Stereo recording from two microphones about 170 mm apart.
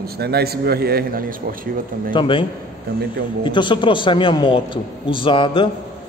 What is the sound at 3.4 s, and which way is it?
A man's voice, 30° left (ahead or behind).